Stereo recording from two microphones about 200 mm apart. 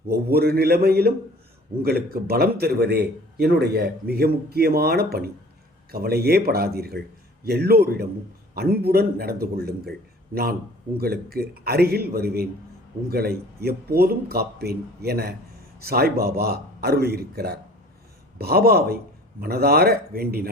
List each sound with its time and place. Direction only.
0.1 s speech: 50° right (ahead or behind)
11.0 s speech: 50° right (ahead or behind)